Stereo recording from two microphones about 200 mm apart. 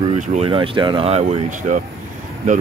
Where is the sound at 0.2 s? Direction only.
35° right (ahead or behind).